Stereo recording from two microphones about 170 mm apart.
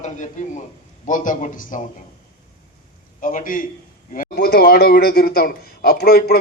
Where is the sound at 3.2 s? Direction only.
55° left (ahead or behind).